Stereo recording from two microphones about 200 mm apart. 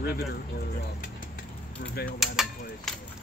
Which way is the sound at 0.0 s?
50° left (ahead or behind).